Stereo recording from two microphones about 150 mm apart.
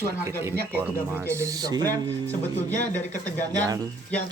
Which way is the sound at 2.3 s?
10° left (ahead or behind).